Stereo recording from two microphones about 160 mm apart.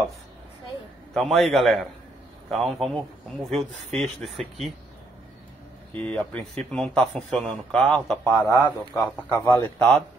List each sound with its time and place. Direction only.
1.1 s speech: centre (ahead or behind)
6.0 s speech: 10° left (ahead or behind)
9.8 s speech: 5° left (ahead or behind)